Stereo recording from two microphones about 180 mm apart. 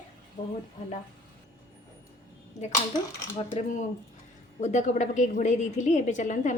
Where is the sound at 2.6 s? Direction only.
40° left (ahead or behind).